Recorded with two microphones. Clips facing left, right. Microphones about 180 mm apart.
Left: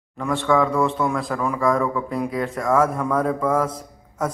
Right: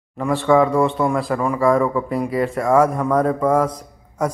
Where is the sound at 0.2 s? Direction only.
Centre (ahead or behind).